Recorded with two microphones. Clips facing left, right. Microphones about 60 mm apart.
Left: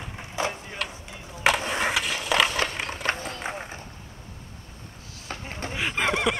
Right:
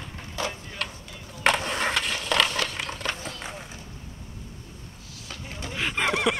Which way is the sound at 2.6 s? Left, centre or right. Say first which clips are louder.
Left 2 dB; left.